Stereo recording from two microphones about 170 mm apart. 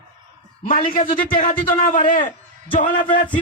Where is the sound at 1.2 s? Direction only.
55° left (ahead or behind).